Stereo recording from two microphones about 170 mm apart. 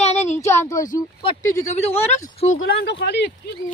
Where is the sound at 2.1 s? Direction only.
45° left (ahead or behind).